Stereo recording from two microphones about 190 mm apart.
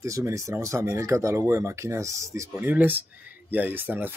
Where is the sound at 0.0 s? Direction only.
15° right (ahead or behind).